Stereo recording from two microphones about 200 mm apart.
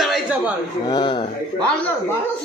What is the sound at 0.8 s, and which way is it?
Speech, 20° left (ahead or behind).